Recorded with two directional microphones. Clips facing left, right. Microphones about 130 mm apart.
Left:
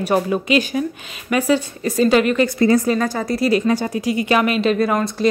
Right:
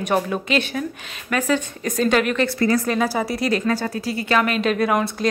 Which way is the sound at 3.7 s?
15° left (ahead or behind).